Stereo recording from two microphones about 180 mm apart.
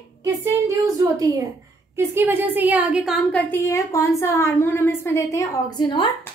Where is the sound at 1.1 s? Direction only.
20° right (ahead or behind).